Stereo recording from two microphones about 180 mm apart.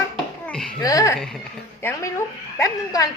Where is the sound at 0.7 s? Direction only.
20° left (ahead or behind).